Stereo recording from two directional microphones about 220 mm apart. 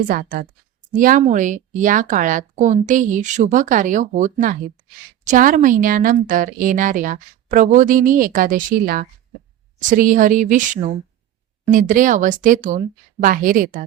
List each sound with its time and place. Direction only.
0.1 s speech: 40° right (ahead or behind)